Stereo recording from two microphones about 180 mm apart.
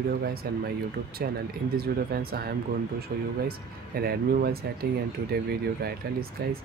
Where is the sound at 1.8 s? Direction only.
60° right (ahead or behind).